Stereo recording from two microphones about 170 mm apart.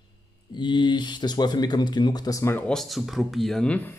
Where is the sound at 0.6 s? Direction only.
30° left (ahead or behind); by 3.9 s 10° left (ahead or behind).